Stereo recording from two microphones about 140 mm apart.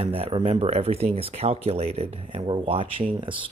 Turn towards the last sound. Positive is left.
turn(degrees=-40)  # may be behind; listen again after turning